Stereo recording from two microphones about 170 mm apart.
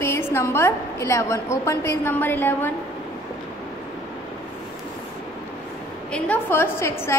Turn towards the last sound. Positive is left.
turn(degrees=15)  # may be behind; listen again after turning